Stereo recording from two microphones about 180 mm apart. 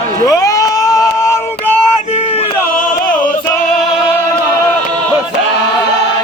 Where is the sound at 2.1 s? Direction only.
35° left (ahead or behind).